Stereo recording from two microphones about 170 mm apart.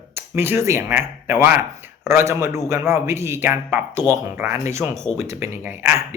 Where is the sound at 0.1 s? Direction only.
15° right (ahead or behind).